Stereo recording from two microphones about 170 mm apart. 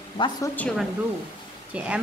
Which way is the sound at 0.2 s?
30° left (ahead or behind).